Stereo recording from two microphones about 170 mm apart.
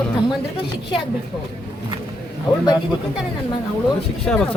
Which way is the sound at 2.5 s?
25° left (ahead or behind).